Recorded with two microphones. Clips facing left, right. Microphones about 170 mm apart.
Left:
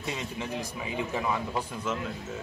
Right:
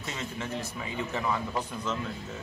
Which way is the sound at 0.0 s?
15° left (ahead or behind).